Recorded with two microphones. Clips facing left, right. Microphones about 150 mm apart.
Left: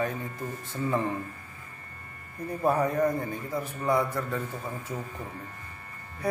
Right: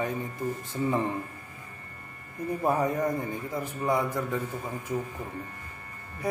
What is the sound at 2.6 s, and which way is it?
A man's voice, 20° right (ahead or behind).